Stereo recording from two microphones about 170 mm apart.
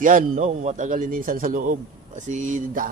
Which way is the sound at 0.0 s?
50° right (ahead or behind).